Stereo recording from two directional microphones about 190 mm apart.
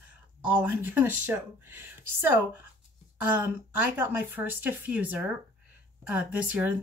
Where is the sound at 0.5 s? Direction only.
10° right (ahead or behind).